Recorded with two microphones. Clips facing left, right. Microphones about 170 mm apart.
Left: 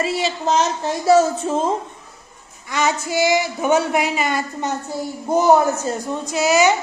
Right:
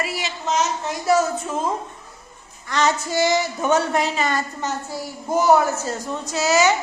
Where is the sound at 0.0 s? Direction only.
30° left (ahead or behind).